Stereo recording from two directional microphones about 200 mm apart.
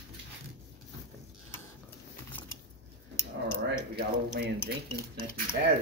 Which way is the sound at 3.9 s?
50° right (ahead or behind).